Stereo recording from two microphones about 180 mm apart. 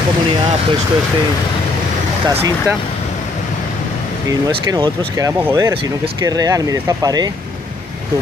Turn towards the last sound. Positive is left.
turn(degrees=-20)  # may be behind; listen again after turning